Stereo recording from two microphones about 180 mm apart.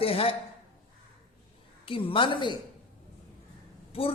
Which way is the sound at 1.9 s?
30° left (ahead or behind).